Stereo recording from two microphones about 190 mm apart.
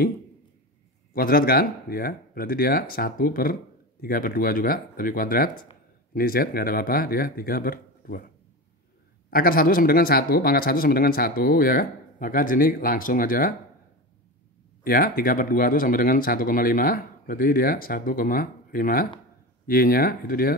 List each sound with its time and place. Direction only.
1.1 s speech: 50° left (ahead or behind)
9.3 s speech: 50° left (ahead or behind)
14.8 s speech: 50° left (ahead or behind)